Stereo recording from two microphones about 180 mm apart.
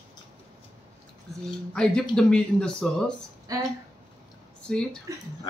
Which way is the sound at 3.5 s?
20° right (ahead or behind).